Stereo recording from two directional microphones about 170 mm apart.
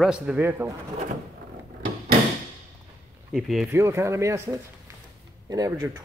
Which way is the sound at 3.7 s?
15° right (ahead or behind).